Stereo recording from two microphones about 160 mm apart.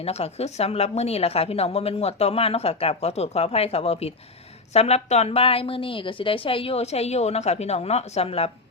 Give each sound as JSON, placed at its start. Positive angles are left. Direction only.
{"t": 0.0, "sound": "a woman's voice", "side_deg": 40}